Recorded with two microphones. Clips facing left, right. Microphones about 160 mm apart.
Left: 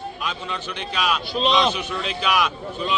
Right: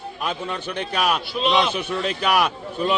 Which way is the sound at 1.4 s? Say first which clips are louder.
Left 3 dB; 25° left (ahead or behind).